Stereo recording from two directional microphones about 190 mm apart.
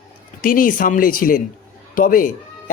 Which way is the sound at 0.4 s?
45° left (ahead or behind).